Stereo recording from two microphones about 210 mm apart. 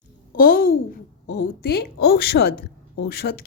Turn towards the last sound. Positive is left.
turn(degrees=50)  # may be behind; listen again after turning